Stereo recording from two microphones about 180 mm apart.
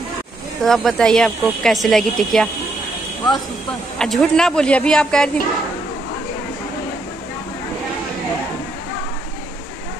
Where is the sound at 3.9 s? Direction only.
5° left (ahead or behind).